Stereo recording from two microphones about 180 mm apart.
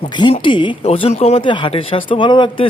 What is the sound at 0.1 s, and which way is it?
Speech, 25° left (ahead or behind).